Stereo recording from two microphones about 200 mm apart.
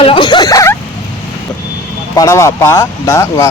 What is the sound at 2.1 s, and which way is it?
Speech, 15° left (ahead or behind).